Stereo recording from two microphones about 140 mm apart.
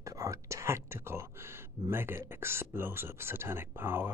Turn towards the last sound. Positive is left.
turn(degrees=-15)  # may be behind; listen again after turning